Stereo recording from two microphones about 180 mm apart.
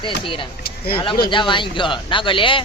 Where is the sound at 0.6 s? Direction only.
55° left (ahead or behind).